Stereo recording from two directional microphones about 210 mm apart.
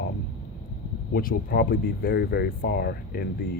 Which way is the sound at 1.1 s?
45° left (ahead or behind).